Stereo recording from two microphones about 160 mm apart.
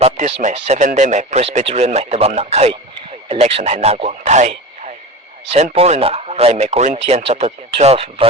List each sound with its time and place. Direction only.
0.0 s speech: 45° right (ahead or behind)